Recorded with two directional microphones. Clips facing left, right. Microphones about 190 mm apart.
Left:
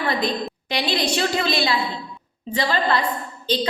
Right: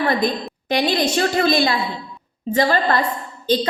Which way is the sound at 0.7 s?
45° right (ahead or behind).